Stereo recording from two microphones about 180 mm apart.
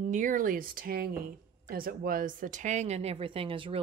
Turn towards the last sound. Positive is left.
turn(degrees=-30)  # may be behind; listen again after turning